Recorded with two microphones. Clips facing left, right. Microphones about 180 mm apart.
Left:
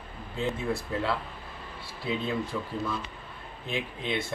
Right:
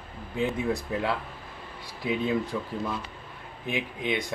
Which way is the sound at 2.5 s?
15° right (ahead or behind).